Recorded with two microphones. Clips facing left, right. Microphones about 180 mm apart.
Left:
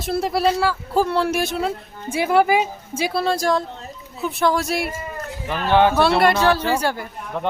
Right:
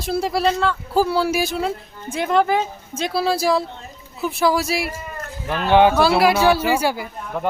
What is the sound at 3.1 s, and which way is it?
Speech, 5° right (ahead or behind).